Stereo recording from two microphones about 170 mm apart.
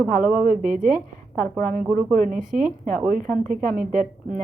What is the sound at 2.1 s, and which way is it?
Speech, 50° right (ahead or behind).